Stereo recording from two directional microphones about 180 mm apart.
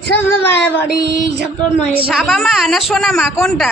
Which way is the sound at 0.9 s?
70° right (ahead or behind).